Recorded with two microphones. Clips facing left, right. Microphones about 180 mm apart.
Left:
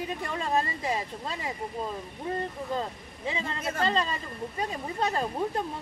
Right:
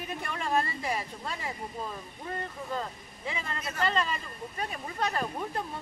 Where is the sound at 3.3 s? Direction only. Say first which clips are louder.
Left 4 dB; 20° left (ahead or behind).